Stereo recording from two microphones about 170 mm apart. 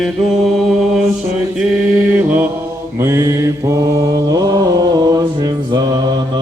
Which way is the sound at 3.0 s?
15° right (ahead or behind).